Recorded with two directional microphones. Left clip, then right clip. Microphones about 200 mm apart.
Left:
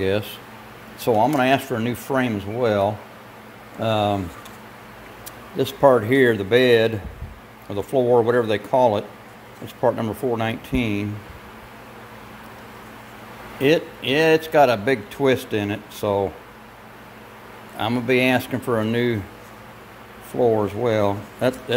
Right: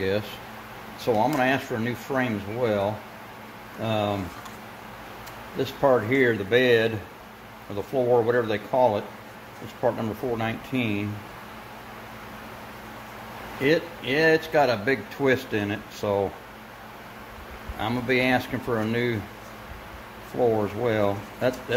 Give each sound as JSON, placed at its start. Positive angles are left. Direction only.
{"t": 1.0, "sound": "a man's voice", "side_deg": 35}
{"t": 5.6, "sound": "a man's voice", "side_deg": 35}
{"t": 13.6, "sound": "a man's voice", "side_deg": 35}
{"t": 17.7, "sound": "a man's voice", "side_deg": 30}
{"t": 20.3, "sound": "speech", "side_deg": 30}